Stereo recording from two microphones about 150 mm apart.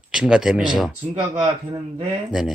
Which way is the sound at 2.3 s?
Centre (ahead or behind).